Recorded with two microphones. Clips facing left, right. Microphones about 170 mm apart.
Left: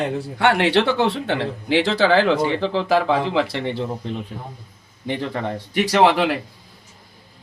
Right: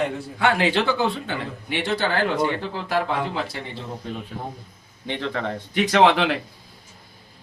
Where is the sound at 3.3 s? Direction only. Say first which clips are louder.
Left 8 dB; 75° left (ahead or behind).